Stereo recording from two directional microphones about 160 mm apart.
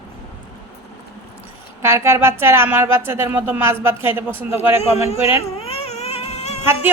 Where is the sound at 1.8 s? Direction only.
15° right (ahead or behind).